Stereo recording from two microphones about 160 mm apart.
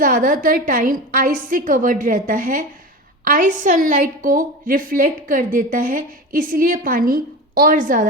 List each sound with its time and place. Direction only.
0.0 s a woman's voice: 60° right (ahead or behind)